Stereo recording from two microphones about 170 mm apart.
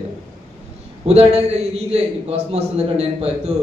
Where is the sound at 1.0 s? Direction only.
40° right (ahead or behind).